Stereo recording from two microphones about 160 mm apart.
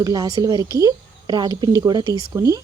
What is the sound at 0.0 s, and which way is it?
Speech, 25° right (ahead or behind).